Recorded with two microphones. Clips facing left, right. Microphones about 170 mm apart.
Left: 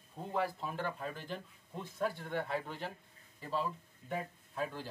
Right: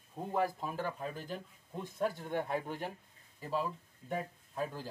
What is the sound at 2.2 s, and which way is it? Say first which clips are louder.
Speech: right 2 dB; 15° right (ahead or behind).